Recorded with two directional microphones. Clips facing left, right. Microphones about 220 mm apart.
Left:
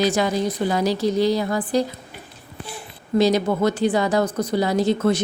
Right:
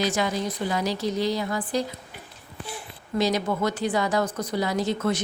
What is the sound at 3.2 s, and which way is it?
A woman's voice, 30° left (ahead or behind).